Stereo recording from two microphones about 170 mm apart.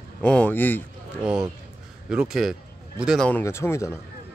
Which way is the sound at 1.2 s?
5° right (ahead or behind).